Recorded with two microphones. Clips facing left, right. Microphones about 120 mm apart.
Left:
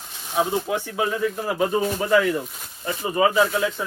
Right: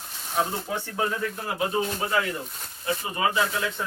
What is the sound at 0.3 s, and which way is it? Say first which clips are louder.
Speech: left 5 dB; 10° left (ahead or behind).